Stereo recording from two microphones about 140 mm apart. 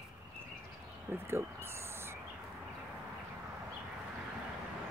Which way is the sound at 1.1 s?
20° right (ahead or behind).